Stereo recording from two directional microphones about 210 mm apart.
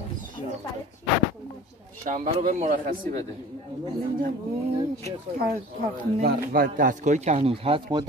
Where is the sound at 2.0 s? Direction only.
35° right (ahead or behind).